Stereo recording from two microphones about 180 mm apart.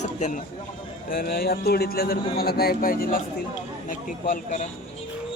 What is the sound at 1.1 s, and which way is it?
A man's voice, 55° left (ahead or behind).